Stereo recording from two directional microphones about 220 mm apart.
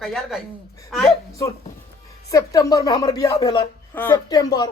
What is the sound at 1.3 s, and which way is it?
Speech, 15° left (ahead or behind).